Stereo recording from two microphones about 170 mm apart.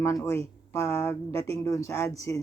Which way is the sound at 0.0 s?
15° left (ahead or behind).